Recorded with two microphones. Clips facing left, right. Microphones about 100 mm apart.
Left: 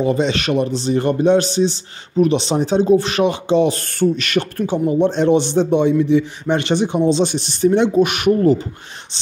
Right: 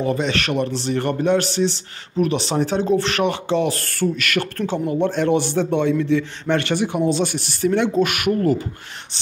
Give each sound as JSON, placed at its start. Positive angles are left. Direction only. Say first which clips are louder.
{"t": 0.0, "sound": "a man's voice", "louder": "left 4 dB", "side_deg": 20}